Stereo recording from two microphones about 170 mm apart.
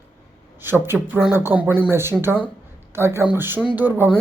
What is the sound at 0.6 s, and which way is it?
Speech, 15° right (ahead or behind).